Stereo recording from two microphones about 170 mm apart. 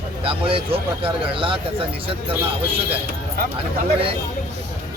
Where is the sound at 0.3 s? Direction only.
30° right (ahead or behind).